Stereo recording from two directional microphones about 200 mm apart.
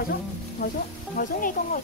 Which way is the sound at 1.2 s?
45° left (ahead or behind).